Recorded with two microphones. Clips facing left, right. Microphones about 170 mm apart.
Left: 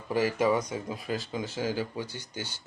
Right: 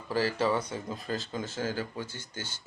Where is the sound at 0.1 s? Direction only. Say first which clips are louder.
Left 2 dB; 15° left (ahead or behind).